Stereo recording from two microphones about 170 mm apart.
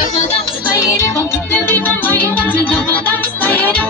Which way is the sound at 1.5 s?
10° left (ahead or behind).